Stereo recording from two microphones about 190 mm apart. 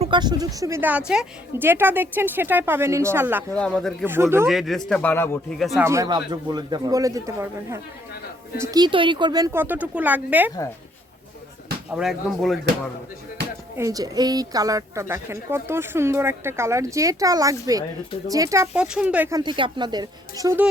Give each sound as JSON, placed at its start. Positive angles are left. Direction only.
{"t": 0.0, "sound": "a woman's voice", "side_deg": -25}
{"t": 3.5, "sound": "speech", "side_deg": 5}
{"t": 4.0, "sound": "a woman's voice", "side_deg": -10}
{"t": 4.4, "sound": "speech", "side_deg": 0}
{"t": 4.9, "sound": "a man's voice", "side_deg": 10}
{"t": 5.5, "sound": "speech", "side_deg": 0}
{"t": 5.8, "sound": "a woman's voice", "side_deg": -15}
{"t": 11.9, "sound": "speech", "side_deg": -5}
{"t": 13.7, "sound": "a woman's voice", "side_deg": -20}
{"t": 19.4, "sound": "speech", "side_deg": -25}